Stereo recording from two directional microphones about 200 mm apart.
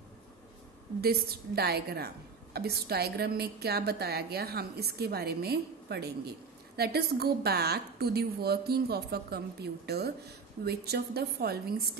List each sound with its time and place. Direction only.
1.0 s a woman's voice: 50° right (ahead or behind)